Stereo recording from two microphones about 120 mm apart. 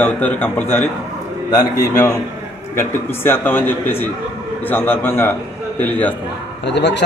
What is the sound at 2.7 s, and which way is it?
A man's voice, 20° left (ahead or behind).